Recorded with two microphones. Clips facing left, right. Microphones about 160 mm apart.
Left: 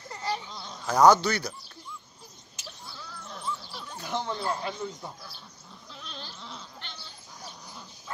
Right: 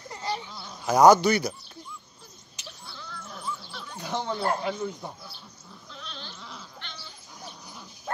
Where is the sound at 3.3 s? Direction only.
5° right (ahead or behind).